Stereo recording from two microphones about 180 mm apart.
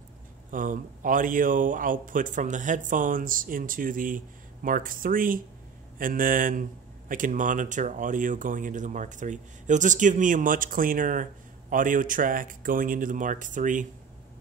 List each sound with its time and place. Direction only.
0.5 s speech: 50° right (ahead or behind)